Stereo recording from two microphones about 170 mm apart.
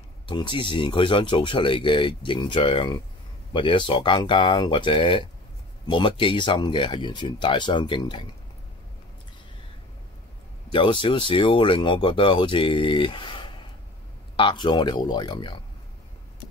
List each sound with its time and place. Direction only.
0.3 s speech: 30° left (ahead or behind)
10.7 s speech: 30° left (ahead or behind)